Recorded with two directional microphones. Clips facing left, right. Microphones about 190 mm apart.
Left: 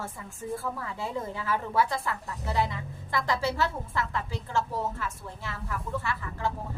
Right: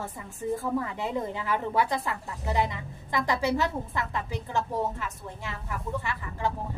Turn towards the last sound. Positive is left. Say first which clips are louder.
# right 1 dB
turn(degrees=-15)  # may be behind; listen again after turning